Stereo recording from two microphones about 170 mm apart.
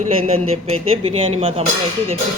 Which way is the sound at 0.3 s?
35° right (ahead or behind).